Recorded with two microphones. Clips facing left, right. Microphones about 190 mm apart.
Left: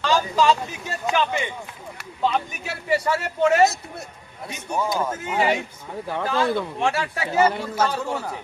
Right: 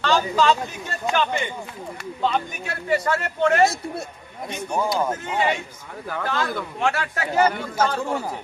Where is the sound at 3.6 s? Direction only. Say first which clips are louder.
Even; 30° right (ahead or behind).